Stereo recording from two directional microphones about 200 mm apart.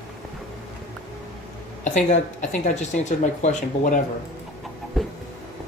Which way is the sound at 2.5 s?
35° left (ahead or behind).